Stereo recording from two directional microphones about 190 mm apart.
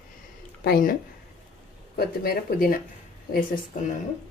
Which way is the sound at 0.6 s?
50° left (ahead or behind).